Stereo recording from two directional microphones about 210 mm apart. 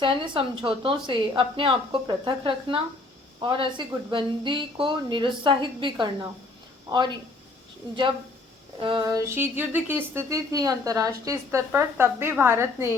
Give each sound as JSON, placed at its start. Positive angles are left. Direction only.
{"t": 0.0, "sound": "a woman's voice", "side_deg": -25}
{"t": 8.8, "sound": "speech", "side_deg": -20}